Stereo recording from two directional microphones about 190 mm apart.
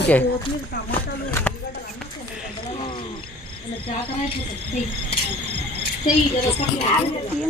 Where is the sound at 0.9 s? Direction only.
10° left (ahead or behind).